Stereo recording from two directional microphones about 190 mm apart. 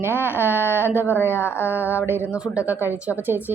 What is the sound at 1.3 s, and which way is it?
Speech, 10° left (ahead or behind).